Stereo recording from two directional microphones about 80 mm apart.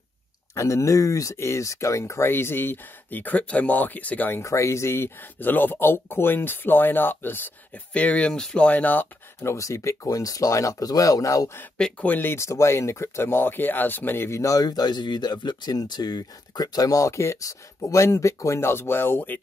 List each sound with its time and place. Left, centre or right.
0.6 s speech: left; by 4.4 s centre
4.4 s speech: left; by 9.0 s centre
9.4 s speech: left
11.8 s speech: centre
14.3 s speech: left